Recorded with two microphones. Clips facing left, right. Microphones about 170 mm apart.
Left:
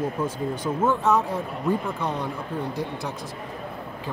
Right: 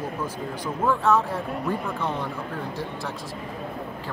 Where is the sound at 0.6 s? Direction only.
20° left (ahead or behind).